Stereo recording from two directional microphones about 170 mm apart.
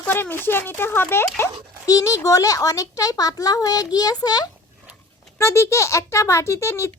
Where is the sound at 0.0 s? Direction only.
10° left (ahead or behind).